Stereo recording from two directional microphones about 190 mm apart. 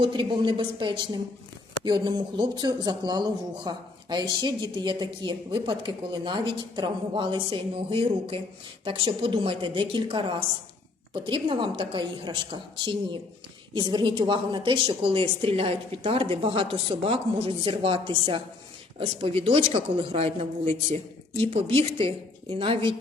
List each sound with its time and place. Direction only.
0.0 s speech: 25° right (ahead or behind)